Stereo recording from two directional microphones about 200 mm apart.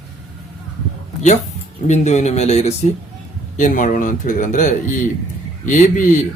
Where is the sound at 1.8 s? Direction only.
35° left (ahead or behind).